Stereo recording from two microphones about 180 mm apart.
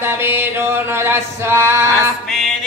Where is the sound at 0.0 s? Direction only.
10° right (ahead or behind).